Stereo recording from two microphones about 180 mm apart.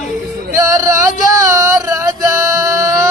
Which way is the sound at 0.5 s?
20° right (ahead or behind).